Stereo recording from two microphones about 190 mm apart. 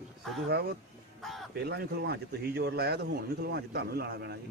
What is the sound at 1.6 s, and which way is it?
A man's voice, 55° right (ahead or behind).